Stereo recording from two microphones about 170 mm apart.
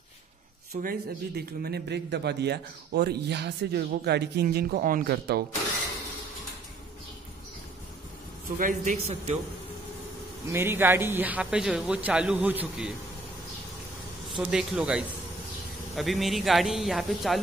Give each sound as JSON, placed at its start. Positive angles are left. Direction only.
{"t": 0.8, "sound": "a man's voice", "side_deg": -65}
{"t": 8.5, "sound": "a man's voice", "side_deg": -50}
{"t": 10.5, "sound": "a man's voice", "side_deg": -15}
{"t": 14.3, "sound": "speech", "side_deg": -5}